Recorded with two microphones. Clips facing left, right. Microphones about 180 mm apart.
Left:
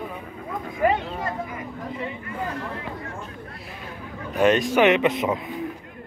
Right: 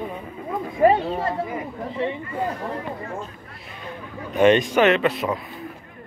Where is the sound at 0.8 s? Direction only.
30° right (ahead or behind).